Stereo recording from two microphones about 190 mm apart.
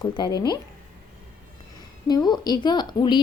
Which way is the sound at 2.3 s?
20° left (ahead or behind).